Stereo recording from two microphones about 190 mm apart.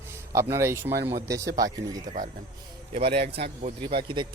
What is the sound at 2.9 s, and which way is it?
Speech, 30° right (ahead or behind).